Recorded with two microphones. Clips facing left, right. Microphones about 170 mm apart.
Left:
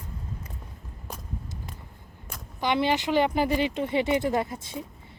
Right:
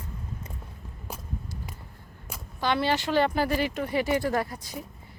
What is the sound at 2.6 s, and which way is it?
Speech, 15° left (ahead or behind).